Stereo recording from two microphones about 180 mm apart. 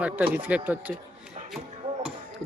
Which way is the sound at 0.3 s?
10° right (ahead or behind).